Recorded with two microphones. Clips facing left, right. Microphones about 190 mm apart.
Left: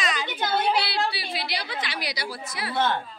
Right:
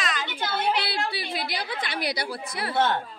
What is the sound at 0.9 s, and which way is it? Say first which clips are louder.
A woman's voice: left 1 dB; 50° right (ahead or behind).